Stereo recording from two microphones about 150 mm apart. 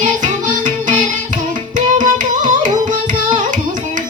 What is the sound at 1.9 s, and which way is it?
Music, 60° right (ahead or behind).